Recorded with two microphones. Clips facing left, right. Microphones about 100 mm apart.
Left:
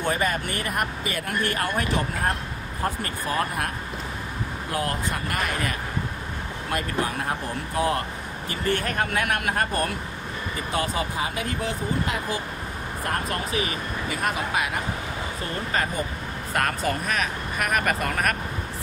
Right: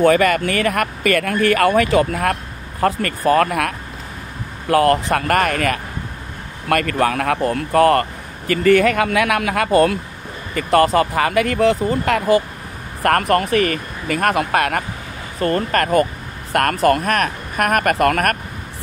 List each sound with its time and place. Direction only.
0.0 s speech: 90° right
2.8 s speech: 75° right (ahead or behind)
10.5 s speech: 75° right (ahead or behind)